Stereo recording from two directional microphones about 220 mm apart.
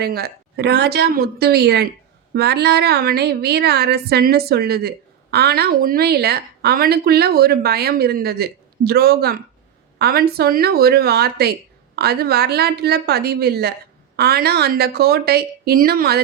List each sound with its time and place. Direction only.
0.0 s a woman's voice: 45° right (ahead or behind)